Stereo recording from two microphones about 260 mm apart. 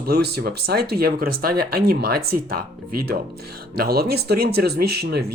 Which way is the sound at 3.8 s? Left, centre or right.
Right.